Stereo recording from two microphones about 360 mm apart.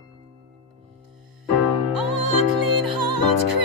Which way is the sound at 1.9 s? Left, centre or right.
Right.